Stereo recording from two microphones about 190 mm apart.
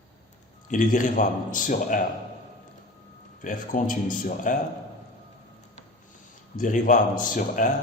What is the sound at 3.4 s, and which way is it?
Speech, 45° left (ahead or behind).